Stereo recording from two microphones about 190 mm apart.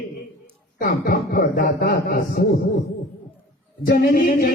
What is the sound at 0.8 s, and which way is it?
A man's voice, 50° left (ahead or behind).